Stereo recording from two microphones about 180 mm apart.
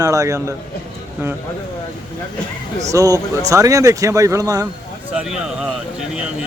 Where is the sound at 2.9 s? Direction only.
20° right (ahead or behind).